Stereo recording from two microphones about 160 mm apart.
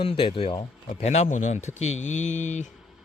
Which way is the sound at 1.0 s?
45° left (ahead or behind).